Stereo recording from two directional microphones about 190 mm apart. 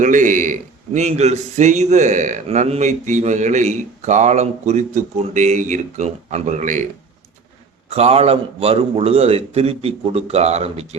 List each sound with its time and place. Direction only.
0.0 s a man's voice: 40° right (ahead or behind)
7.9 s a man's voice: 30° right (ahead or behind)